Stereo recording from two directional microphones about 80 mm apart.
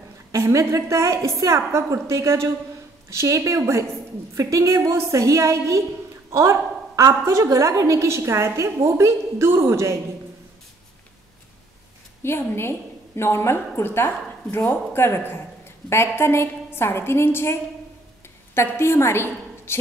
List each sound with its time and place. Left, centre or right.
0.3 s a woman's voice: right
12.2 s a woman's voice: left